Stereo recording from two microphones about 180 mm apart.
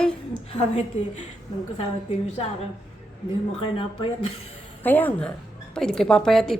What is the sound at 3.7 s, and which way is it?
Speech, 30° left (ahead or behind).